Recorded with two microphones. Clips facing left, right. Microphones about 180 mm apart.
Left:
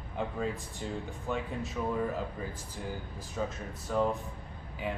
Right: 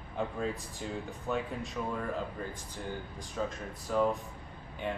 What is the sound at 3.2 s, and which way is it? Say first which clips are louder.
A man's voice: left 1 dB; centre (ahead or behind).